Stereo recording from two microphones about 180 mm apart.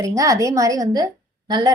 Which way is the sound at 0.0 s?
20° right (ahead or behind).